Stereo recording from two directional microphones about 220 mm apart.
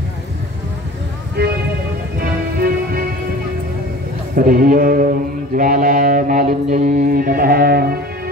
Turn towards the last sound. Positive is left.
turn(degrees=-45)  # may be behind; listen again after turning